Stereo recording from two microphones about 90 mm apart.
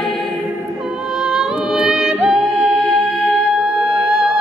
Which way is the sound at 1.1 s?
5° right (ahead or behind).